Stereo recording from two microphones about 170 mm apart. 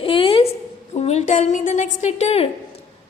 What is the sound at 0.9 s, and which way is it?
A woman's voice, 40° left (ahead or behind).